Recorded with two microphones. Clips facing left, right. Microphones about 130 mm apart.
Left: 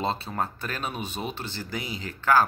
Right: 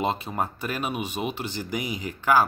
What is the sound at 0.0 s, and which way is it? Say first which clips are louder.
Speech: right 2 dB; 15° right (ahead or behind).